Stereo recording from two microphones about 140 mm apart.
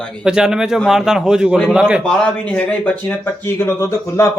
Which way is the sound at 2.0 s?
10° left (ahead or behind).